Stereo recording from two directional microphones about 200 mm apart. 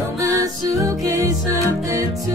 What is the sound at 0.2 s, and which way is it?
Music, 15° right (ahead or behind).